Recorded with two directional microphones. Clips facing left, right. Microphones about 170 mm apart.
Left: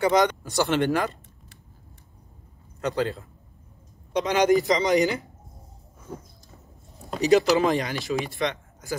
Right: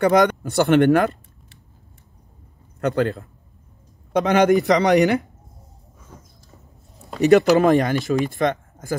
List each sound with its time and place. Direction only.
0.0 s speech: 55° right (ahead or behind)
2.8 s speech: 55° right (ahead or behind)
7.2 s speech: 60° right (ahead or behind)